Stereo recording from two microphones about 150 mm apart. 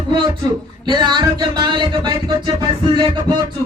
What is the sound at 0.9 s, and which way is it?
Music, 30° right (ahead or behind).